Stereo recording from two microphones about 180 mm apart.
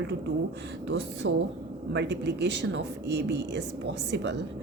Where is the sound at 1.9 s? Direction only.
75° right (ahead or behind).